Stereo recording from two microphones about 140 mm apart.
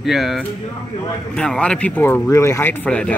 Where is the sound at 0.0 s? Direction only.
Centre (ahead or behind).